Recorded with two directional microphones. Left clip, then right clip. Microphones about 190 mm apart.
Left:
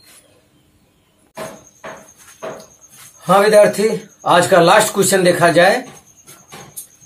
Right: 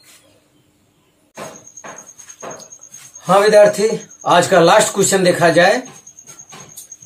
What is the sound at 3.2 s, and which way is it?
A man's voice, 15° right (ahead or behind).